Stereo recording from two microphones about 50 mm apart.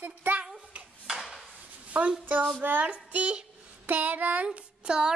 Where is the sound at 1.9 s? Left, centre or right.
Right.